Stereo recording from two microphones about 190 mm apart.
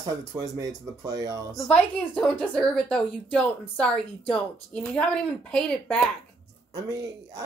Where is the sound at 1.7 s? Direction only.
5° left (ahead or behind).